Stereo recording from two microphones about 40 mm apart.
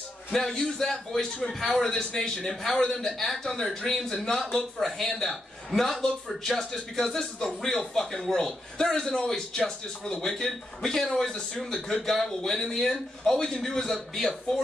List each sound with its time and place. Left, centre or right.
0.3 s a man's voice: centre